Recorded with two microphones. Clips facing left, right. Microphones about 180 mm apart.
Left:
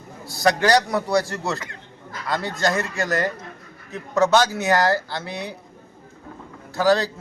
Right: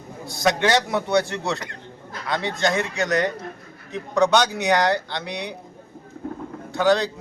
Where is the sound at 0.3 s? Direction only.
Centre (ahead or behind).